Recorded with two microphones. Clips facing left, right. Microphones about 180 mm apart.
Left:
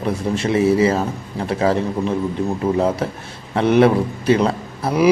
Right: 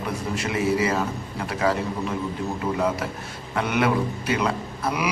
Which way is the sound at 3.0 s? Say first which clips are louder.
Left 6 dB; 30° left (ahead or behind).